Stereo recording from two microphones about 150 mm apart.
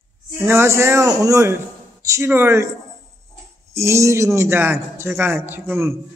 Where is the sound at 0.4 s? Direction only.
15° right (ahead or behind).